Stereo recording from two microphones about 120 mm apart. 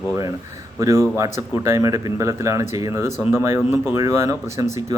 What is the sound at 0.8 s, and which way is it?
Speech, 25° right (ahead or behind).